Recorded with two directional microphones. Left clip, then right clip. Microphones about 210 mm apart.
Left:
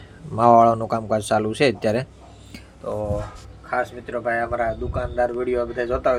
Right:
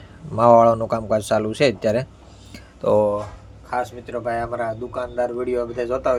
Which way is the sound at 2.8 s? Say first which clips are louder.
Right 10 dB; 50° right (ahead or behind).